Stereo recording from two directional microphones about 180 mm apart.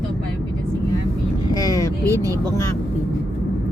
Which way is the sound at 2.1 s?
20° right (ahead or behind).